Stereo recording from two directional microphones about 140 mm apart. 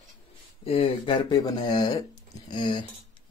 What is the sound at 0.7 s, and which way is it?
Speech, 40° left (ahead or behind).